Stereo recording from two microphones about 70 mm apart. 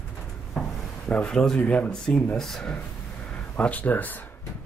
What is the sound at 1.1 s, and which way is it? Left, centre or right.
Speech, centre.